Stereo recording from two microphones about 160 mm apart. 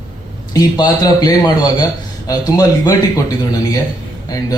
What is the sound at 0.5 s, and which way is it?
A man's voice, 25° left (ahead or behind).